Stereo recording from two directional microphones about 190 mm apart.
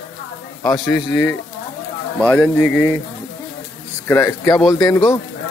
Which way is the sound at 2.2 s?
5° left (ahead or behind).